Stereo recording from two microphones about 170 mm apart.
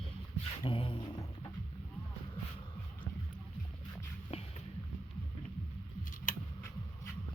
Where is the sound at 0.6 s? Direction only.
30° left (ahead or behind).